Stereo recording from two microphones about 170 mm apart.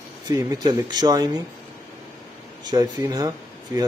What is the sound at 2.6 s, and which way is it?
Speech, 25° right (ahead or behind).